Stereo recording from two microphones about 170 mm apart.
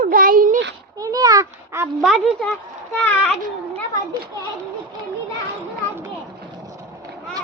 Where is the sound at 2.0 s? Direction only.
Centre (ahead or behind).